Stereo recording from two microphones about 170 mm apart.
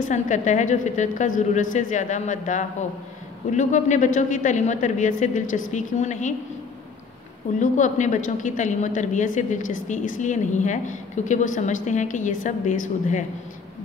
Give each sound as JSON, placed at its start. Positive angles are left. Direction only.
{"t": 0.0, "sound": "a woman's voice", "side_deg": 45}
{"t": 7.5, "sound": "a woman's voice", "side_deg": 45}